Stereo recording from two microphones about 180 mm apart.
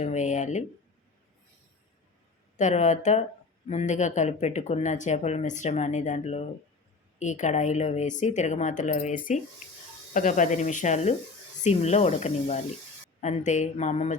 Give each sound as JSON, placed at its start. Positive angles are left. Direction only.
{"t": 0.0, "sound": "a woman's voice", "side_deg": 40}
{"t": 2.6, "sound": "a woman's voice", "side_deg": 40}